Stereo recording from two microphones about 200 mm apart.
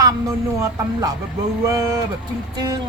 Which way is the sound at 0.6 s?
20° right (ahead or behind).